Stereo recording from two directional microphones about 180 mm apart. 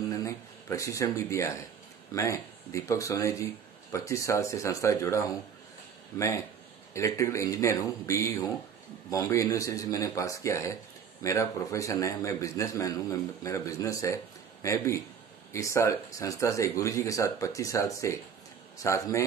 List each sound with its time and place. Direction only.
0.1 s a man's voice: 15° left (ahead or behind)